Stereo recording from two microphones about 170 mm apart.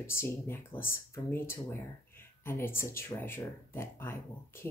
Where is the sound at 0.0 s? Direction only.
15° left (ahead or behind).